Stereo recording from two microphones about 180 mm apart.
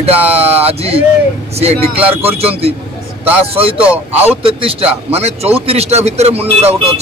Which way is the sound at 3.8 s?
10° right (ahead or behind).